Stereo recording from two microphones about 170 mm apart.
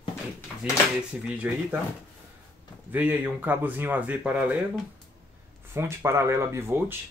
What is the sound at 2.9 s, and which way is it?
Speech, 10° right (ahead or behind).